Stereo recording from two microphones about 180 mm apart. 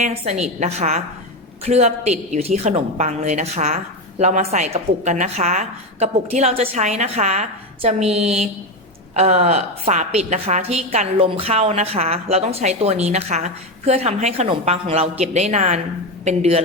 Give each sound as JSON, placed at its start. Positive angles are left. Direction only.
{"t": 0.0, "sound": "a woman's voice", "side_deg": -40}